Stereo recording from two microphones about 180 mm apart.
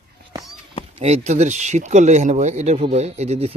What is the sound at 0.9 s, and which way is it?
Speech, 35° right (ahead or behind).